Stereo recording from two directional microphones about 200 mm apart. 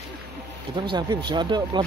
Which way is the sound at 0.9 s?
20° right (ahead or behind).